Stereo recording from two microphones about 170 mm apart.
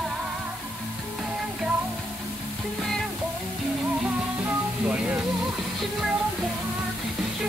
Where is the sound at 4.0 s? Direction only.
5° right (ahead or behind).